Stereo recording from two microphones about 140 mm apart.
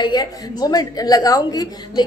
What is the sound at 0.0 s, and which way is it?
A woman's voice, 30° left (ahead or behind).